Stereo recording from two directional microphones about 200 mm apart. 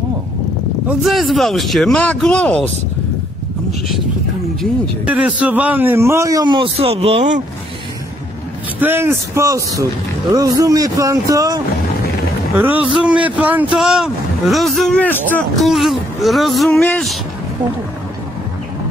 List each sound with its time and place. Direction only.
0.8 s speech: centre (ahead or behind)
4.6 s a man's voice: 5° right (ahead or behind); by 7.4 s 35° right (ahead or behind)
8.7 s a man's voice: 10° right (ahead or behind)